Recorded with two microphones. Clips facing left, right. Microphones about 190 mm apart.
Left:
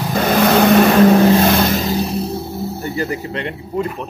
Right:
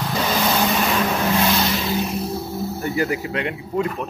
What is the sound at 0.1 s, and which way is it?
Vehicle, 55° left (ahead or behind).